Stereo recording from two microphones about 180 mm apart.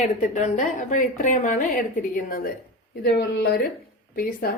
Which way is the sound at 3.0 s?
60° left (ahead or behind).